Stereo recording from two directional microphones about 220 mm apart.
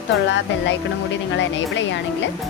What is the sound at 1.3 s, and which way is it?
Speech, 55° left (ahead or behind).